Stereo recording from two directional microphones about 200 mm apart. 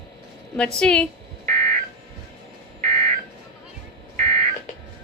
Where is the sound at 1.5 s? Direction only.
45° right (ahead or behind).